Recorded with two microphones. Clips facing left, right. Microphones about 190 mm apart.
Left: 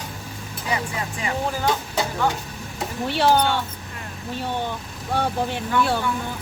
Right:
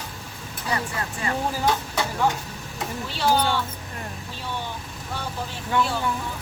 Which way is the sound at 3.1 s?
60° left (ahead or behind).